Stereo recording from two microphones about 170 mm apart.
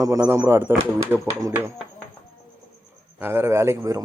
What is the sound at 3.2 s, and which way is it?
Speech, 15° right (ahead or behind).